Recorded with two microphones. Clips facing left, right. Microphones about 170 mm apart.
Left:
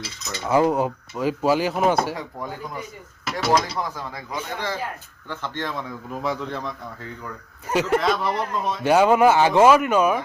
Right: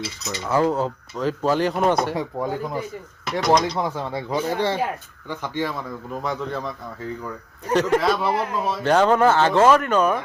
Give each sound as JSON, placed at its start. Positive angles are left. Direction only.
{"t": 0.4, "sound": "speech", "side_deg": 15}
{"t": 2.1, "sound": "speech", "side_deg": -25}
{"t": 3.4, "sound": "speech", "side_deg": 5}
{"t": 3.8, "sound": "speech", "side_deg": -30}
{"t": 5.3, "sound": "speech", "side_deg": -10}
{"t": 7.9, "sound": "speech", "side_deg": -5}
{"t": 8.8, "sound": "speech", "side_deg": 10}